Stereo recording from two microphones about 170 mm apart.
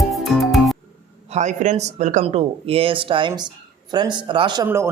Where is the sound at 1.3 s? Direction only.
45° right (ahead or behind); by 4.7 s 25° right (ahead or behind).